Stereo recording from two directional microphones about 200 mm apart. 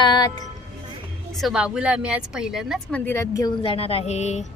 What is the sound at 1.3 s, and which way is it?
A woman's voice, centre (ahead or behind).